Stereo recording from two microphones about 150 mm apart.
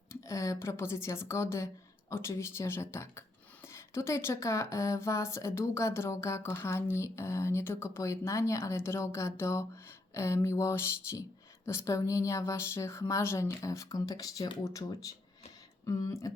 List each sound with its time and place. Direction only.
0.1 s speech: 20° left (ahead or behind)